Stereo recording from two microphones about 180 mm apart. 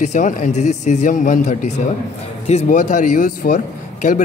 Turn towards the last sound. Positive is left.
turn(degrees=45)  # may be behind; listen again after turning